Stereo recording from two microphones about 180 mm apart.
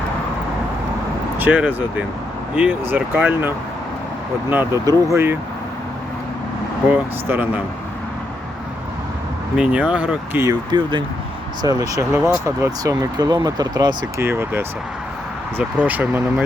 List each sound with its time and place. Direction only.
1.4 s speech: 10° right (ahead or behind)
6.9 s speech: 10° right (ahead or behind)
9.6 s speech: 5° right (ahead or behind)